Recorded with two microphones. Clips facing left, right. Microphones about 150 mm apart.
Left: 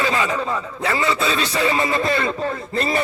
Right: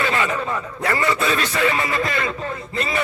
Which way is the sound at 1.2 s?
30° left (ahead or behind).